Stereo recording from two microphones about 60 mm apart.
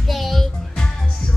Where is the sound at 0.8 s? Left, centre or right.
Centre.